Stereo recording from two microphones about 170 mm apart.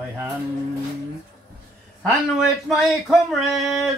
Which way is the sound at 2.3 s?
Centre (ahead or behind).